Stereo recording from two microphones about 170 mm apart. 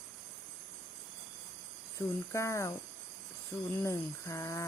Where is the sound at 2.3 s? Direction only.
15° left (ahead or behind).